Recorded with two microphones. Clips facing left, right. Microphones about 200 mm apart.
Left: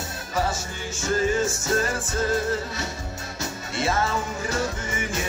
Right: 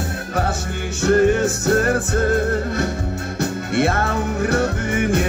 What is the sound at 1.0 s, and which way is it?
Music, 65° right (ahead or behind).